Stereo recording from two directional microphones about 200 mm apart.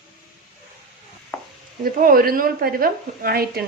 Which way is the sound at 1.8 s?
45° right (ahead or behind).